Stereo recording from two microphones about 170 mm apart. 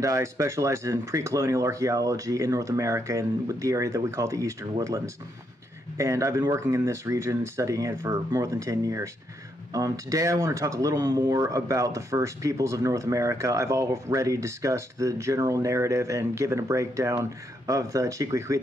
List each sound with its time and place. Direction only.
0.0 s speech: 20° right (ahead or behind)